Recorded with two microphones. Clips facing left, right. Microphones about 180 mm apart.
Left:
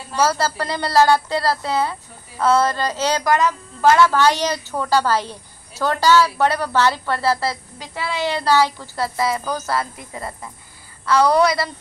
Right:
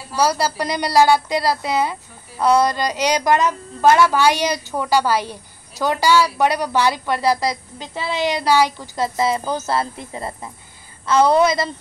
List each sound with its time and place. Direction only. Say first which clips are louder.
0.1 s a woman's voice: even; 15° right (ahead or behind)